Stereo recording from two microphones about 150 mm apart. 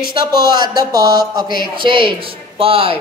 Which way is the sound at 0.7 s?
25° right (ahead or behind).